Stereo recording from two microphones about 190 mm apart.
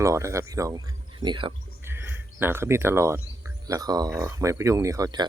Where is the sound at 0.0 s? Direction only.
15° right (ahead or behind).